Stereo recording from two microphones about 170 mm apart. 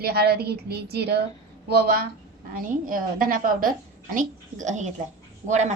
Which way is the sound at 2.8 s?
55° right (ahead or behind).